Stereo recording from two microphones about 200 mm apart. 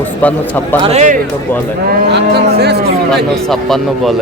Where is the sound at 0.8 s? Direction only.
35° right (ahead or behind).